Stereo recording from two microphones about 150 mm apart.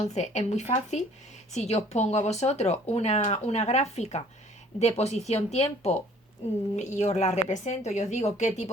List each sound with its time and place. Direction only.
0.0 s speech: 50° left (ahead or behind)